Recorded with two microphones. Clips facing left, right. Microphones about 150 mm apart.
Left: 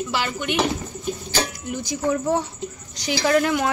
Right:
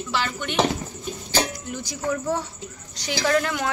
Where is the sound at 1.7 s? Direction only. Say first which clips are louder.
Left 7 dB; 20° left (ahead or behind).